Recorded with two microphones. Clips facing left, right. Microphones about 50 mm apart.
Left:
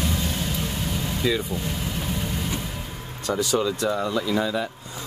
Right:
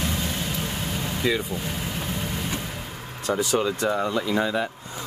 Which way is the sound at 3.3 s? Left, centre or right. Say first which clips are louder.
Even; right.